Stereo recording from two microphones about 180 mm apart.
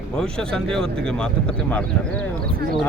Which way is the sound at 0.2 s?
5° left (ahead or behind).